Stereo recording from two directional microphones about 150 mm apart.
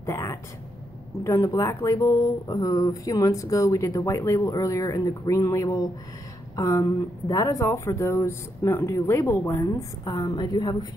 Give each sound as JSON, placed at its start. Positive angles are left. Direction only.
{"t": 0.0, "sound": "speech", "side_deg": 20}